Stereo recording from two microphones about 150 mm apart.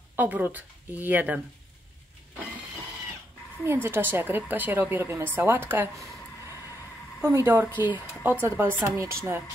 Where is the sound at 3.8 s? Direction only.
15° right (ahead or behind).